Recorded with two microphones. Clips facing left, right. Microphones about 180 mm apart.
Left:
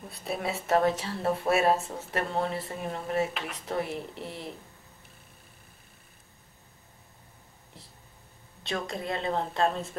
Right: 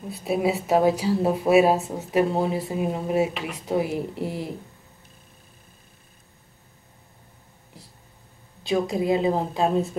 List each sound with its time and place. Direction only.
0.1 s speech: centre (ahead or behind)
8.6 s speech: centre (ahead or behind)